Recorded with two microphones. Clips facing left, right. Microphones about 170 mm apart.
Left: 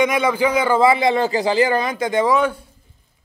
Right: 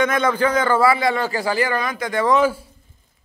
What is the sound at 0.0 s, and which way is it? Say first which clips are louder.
A man's voice: left 1 dB; 10° left (ahead or behind).